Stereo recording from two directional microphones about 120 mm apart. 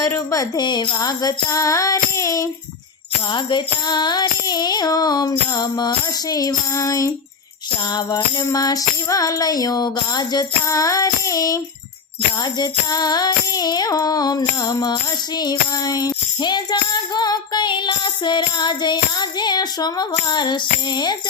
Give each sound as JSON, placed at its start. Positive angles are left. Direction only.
{"t": 0.0, "sound": "music", "side_deg": 25}
{"t": 3.3, "sound": "music", "side_deg": 40}
{"t": 8.4, "sound": "music", "side_deg": 30}